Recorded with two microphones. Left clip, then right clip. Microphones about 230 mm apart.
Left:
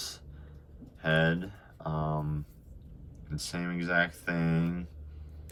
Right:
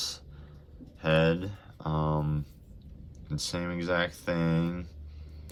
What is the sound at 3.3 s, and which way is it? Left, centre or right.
Speech, centre.